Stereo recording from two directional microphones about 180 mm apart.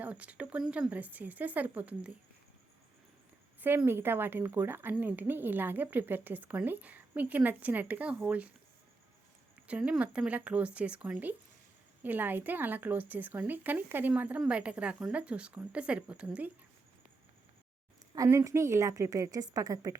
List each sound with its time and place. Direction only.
0.0 s a woman's voice: 5° right (ahead or behind)
3.8 s a woman's voice: 10° right (ahead or behind)
9.6 s a woman's voice: 5° right (ahead or behind)
18.1 s a woman's voice: 15° right (ahead or behind)